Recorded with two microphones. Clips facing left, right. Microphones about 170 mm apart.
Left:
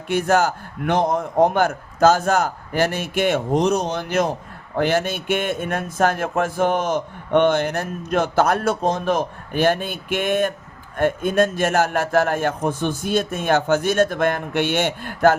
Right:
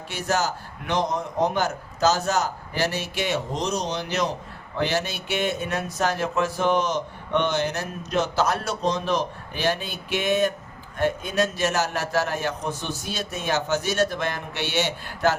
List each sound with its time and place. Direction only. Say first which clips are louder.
0.1 s a man's voice: left 7 dB; 55° left (ahead or behind)